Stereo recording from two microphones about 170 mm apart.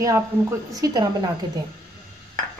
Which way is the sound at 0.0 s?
20° right (ahead or behind).